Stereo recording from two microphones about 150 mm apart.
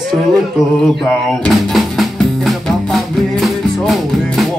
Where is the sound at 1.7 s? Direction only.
Centre (ahead or behind).